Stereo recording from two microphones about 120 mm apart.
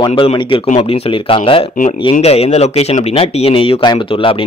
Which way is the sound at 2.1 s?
60° left (ahead or behind).